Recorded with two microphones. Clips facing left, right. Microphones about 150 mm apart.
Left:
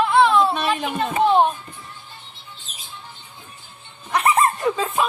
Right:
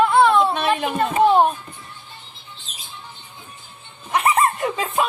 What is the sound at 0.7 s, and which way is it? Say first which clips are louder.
Speech: right 3 dB; 45° right (ahead or behind).